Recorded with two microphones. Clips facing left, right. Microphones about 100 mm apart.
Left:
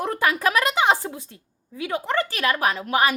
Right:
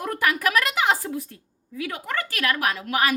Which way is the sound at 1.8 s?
25° left (ahead or behind).